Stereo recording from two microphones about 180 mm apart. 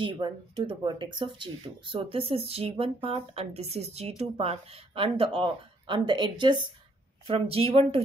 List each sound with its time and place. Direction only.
0.0 s speech: 25° right (ahead or behind)